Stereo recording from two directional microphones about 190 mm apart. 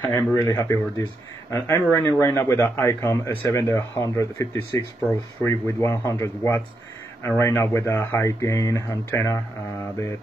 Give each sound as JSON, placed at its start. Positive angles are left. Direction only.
{"t": 0.3, "sound": "a man's voice", "side_deg": 15}